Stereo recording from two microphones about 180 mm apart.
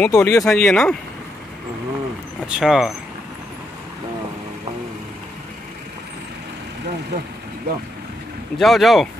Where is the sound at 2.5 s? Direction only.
Centre (ahead or behind).